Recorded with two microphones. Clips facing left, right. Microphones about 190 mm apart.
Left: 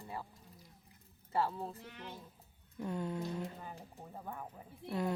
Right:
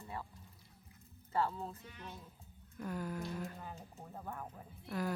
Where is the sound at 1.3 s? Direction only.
10° left (ahead or behind).